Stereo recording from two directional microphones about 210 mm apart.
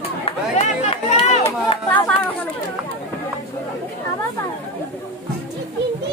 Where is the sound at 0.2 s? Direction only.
30° left (ahead or behind).